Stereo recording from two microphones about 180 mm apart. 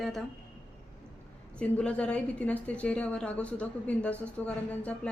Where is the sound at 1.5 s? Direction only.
5° left (ahead or behind).